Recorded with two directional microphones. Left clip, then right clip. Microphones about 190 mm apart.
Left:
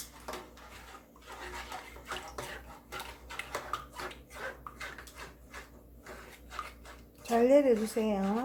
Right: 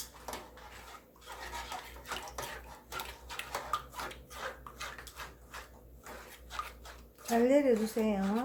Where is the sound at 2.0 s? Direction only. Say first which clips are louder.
Left 1 dB; 5° right (ahead or behind).